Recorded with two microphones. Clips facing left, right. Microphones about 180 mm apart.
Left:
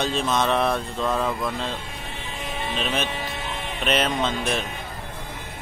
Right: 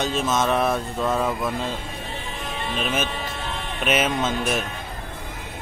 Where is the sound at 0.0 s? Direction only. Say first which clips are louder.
Right 1 dB; centre (ahead or behind).